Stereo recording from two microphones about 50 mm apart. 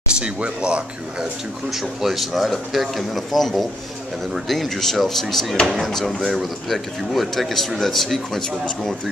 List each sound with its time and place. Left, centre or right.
0.1 s speech: centre
1.7 s speech: centre